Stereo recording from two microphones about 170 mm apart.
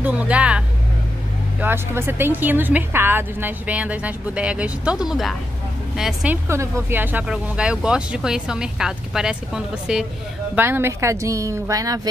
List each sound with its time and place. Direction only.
0.0 s vehicle: 5° right (ahead or behind)
1.6 s a woman's voice: 10° right (ahead or behind)
6.5 s a woman's voice: 15° right (ahead or behind)